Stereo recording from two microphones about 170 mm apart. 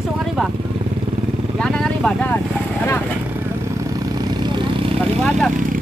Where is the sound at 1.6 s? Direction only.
5° left (ahead or behind).